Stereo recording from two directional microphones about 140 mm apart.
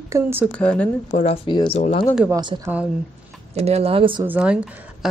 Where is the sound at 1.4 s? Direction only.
35° left (ahead or behind).